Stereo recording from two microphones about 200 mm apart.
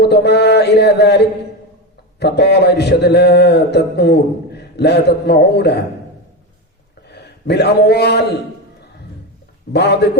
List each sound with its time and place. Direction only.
0.0 s a sound: 55° left (ahead or behind)
2.1 s a man's voice: 55° left (ahead or behind)
7.1 s a man's voice: 55° left (ahead or behind)
9.7 s a man's voice: 55° left (ahead or behind)